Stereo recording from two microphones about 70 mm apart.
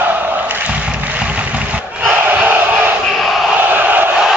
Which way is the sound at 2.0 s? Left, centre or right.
Right.